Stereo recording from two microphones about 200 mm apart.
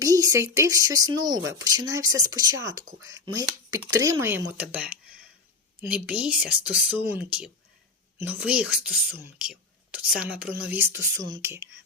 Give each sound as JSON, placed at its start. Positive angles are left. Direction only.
{"t": 0.0, "sound": "speech", "side_deg": -15}